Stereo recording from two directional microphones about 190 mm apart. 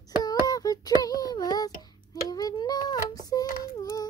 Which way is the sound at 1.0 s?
20° left (ahead or behind).